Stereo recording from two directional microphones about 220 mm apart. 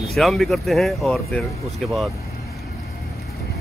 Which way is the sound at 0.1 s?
Centre (ahead or behind).